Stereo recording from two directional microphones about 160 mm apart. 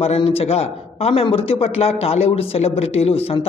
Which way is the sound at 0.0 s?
40° left (ahead or behind).